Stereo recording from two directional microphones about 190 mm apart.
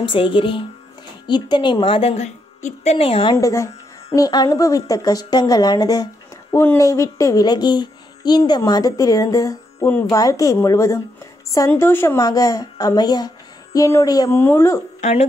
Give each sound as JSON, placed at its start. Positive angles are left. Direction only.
{"t": 0.0, "sound": "speech", "side_deg": 25}
{"t": 3.3, "sound": "speech", "side_deg": 15}
{"t": 15.0, "sound": "speech", "side_deg": 35}